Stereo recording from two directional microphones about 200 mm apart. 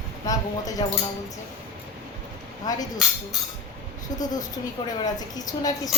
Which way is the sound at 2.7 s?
20° left (ahead or behind).